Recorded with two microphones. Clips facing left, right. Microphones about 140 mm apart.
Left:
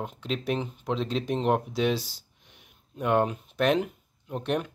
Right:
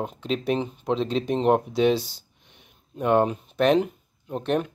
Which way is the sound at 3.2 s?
5° left (ahead or behind).